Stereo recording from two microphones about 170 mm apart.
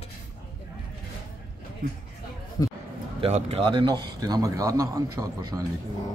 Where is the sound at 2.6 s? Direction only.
20° left (ahead or behind).